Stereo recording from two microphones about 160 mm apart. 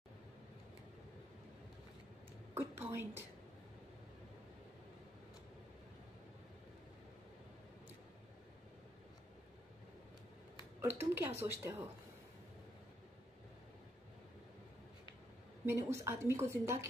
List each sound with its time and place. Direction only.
2.5 s a woman's voice: 15° right (ahead or behind)
10.8 s a woman's voice: 15° right (ahead or behind)
15.6 s a woman's voice: 15° right (ahead or behind)